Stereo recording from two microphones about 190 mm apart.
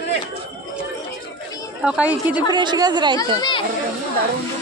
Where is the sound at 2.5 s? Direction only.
25° right (ahead or behind).